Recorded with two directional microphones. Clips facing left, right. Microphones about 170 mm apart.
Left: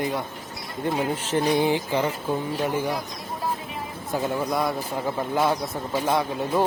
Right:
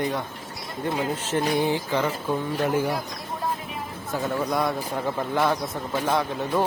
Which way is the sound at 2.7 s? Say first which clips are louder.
Right 2 dB; 10° right (ahead or behind).